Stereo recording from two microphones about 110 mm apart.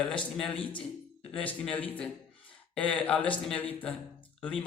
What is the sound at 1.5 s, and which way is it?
Speech, 15° left (ahead or behind).